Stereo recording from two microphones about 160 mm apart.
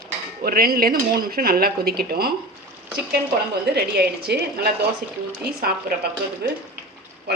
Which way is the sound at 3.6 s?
90° right.